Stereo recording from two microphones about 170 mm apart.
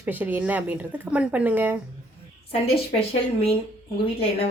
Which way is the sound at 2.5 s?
35° left (ahead or behind).